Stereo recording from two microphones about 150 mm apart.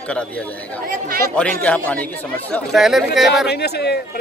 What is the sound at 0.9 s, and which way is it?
Speech, 75° right (ahead or behind).